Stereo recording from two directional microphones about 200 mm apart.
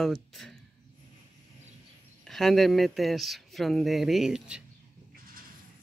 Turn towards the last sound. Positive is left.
turn(degrees=-5)  # may be behind; listen again after turning